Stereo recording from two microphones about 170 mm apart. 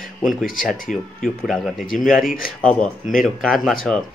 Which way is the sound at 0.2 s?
Centre (ahead or behind).